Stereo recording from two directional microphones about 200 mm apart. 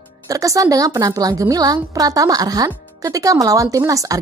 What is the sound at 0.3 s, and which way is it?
A woman's voice, 15° right (ahead or behind).